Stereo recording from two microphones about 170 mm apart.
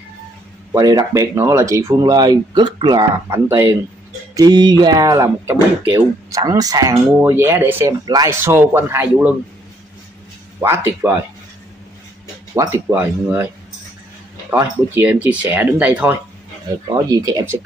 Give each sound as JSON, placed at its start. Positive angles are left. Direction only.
{"t": 0.7, "sound": "speech", "side_deg": -20}
{"t": 10.6, "sound": "speech", "side_deg": -15}
{"t": 12.5, "sound": "speech", "side_deg": -15}
{"t": 14.5, "sound": "speech", "side_deg": -15}
{"t": 16.9, "sound": "speech", "side_deg": -20}